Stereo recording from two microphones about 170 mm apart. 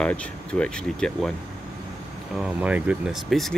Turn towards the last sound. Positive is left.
turn(degrees=0)  # may be behind; listen again after turning